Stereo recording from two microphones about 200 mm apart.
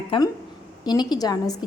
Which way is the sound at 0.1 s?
25° left (ahead or behind).